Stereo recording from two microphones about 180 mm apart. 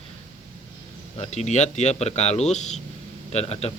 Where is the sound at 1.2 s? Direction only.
40° left (ahead or behind).